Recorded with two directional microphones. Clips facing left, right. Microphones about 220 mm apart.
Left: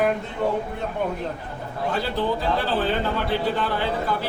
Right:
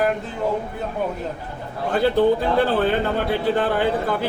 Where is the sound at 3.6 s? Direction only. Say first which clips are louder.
Right 5 dB; 55° right (ahead or behind).